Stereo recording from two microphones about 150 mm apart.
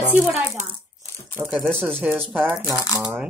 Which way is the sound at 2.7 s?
20° left (ahead or behind).